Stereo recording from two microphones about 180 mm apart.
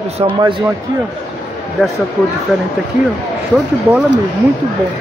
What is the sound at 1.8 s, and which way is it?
Speech, centre (ahead or behind).